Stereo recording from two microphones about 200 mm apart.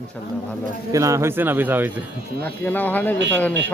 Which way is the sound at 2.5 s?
10° left (ahead or behind).